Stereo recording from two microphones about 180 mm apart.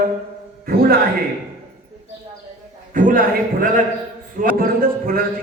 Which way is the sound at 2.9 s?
50° right (ahead or behind).